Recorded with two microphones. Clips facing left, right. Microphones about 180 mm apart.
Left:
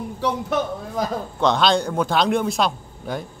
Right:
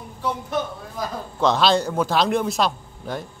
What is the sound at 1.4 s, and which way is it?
Speech, centre (ahead or behind).